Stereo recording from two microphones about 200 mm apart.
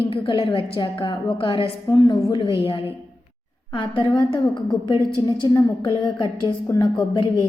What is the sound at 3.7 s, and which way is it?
A woman's voice, 25° left (ahead or behind).